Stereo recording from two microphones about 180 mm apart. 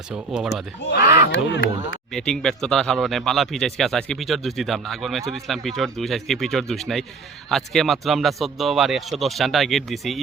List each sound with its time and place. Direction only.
0.1 s speech: 5° right (ahead or behind)
1.3 s speech: 80° left
2.1 s speech: 5° left (ahead or behind)